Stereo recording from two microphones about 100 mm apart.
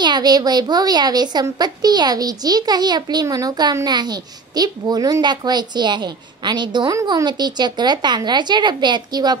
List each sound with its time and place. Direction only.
0.0 s a child's voice: 45° right (ahead or behind)